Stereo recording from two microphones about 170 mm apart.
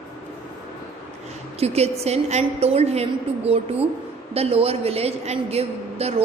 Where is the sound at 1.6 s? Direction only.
40° right (ahead or behind).